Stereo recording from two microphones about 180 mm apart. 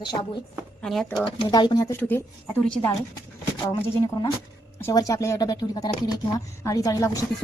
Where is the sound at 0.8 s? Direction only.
Centre (ahead or behind).